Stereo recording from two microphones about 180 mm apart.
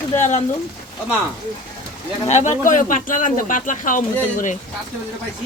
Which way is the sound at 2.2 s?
40° left (ahead or behind).